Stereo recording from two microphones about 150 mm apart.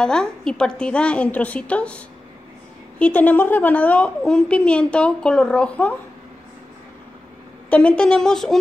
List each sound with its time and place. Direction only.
0.0 s a woman's voice: 5° left (ahead or behind)
7.7 s speech: 5° left (ahead or behind)